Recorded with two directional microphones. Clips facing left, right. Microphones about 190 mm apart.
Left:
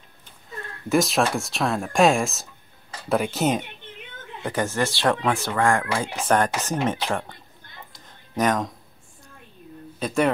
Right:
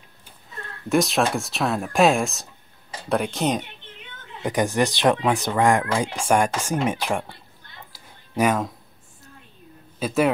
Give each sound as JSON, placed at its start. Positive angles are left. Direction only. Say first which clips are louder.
{"t": 0.8, "sound": "speech", "louder": "even", "side_deg": 0}
{"t": 4.4, "sound": "speech", "louder": "right 3 dB", "side_deg": -15}
{"t": 7.9, "sound": "a sound", "louder": "right 1 dB", "side_deg": -5}
{"t": 9.9, "sound": "speech", "louder": "right 1 dB", "side_deg": -5}